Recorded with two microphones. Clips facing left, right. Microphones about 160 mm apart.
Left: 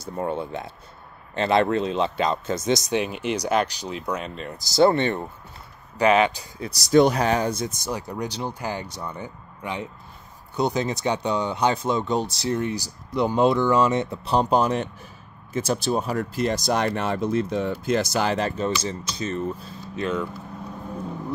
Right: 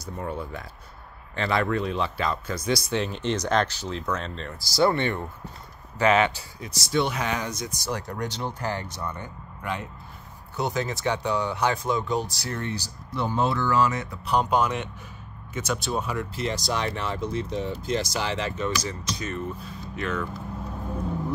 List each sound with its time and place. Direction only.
0.0 s speech: 25° left (ahead or behind)
6.6 s speech: 40° left (ahead or behind)
7.9 s speech: 10° left (ahead or behind); by 18.7 s 45° left (ahead or behind)
18.7 s speech: 25° left (ahead or behind)